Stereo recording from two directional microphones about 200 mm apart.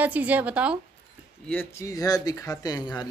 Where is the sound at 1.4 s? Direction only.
10° left (ahead or behind).